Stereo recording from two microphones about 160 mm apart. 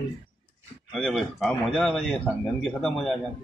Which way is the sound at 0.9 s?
Centre (ahead or behind).